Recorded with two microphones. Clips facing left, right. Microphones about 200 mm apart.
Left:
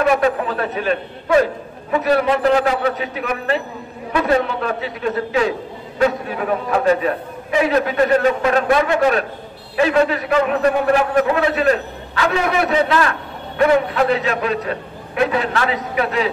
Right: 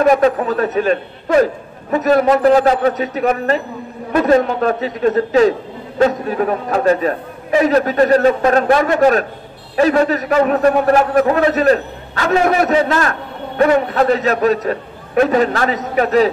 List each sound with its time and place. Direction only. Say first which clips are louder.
0.0 s a man's voice: right 4 dB; 40° right (ahead or behind)